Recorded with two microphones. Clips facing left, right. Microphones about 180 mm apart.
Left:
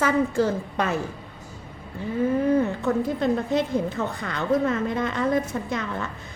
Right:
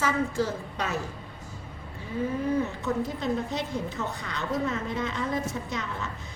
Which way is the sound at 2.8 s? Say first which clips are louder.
Left 6 dB; 55° left (ahead or behind).